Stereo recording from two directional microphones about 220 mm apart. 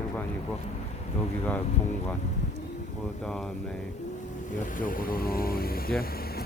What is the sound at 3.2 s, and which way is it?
Speech, 5° left (ahead or behind).